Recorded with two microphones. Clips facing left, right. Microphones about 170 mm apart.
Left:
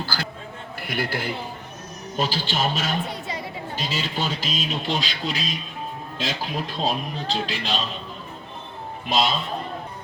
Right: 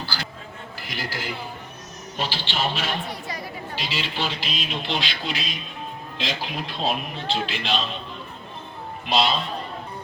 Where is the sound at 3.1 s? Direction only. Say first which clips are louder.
Left 2 dB; 25° left (ahead or behind).